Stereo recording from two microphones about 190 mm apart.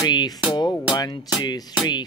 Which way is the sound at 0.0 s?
20° left (ahead or behind).